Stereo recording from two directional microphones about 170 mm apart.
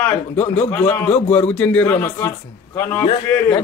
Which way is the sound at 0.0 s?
10° left (ahead or behind).